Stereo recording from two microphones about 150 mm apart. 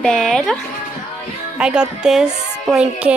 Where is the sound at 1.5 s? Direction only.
5° right (ahead or behind).